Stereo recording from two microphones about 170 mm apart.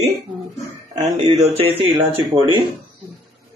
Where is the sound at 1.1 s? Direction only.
25° right (ahead or behind).